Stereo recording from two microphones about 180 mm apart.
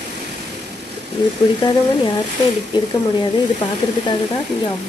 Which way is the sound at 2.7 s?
25° left (ahead or behind).